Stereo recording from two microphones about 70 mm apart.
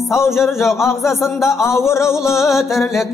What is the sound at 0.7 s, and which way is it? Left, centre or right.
Music, left.